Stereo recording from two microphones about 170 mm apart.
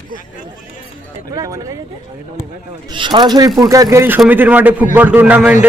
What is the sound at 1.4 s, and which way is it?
Chatter, 20° right (ahead or behind).